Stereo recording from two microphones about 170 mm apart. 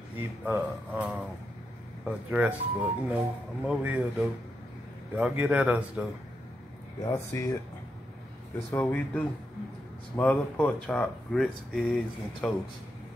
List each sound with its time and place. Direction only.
0.2 s speech: 10° right (ahead or behind)
7.1 s speech: 20° left (ahead or behind)
8.7 s speech: 10° left (ahead or behind)